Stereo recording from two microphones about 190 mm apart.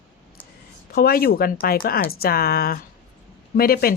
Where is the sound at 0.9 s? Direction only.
50° left (ahead or behind).